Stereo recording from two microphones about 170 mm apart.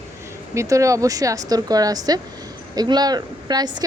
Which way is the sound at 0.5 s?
20° right (ahead or behind).